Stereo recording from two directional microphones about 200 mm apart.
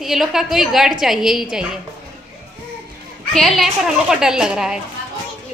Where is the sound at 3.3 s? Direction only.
Centre (ahead or behind).